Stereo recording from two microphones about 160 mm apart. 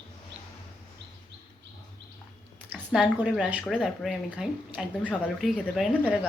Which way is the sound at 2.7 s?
5° right (ahead or behind).